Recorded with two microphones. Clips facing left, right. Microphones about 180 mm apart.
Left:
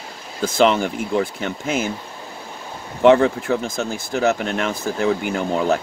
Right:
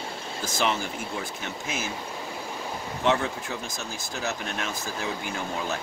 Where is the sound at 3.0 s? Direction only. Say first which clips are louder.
Left 12 dB; 75° left (ahead or behind); by 4.7 s 60° left (ahead or behind).